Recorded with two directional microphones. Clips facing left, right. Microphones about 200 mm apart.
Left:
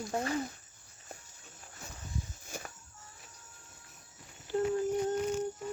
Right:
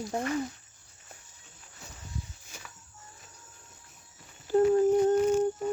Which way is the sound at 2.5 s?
50° left (ahead or behind).